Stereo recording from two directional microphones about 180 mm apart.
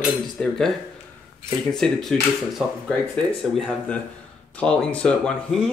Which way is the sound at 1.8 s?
5° left (ahead or behind).